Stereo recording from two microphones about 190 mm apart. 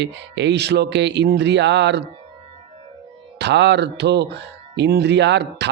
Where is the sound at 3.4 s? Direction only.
65° right (ahead or behind).